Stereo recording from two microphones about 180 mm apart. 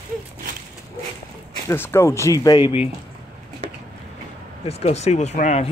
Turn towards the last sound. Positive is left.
turn(degrees=40)  # may be behind; listen again after turning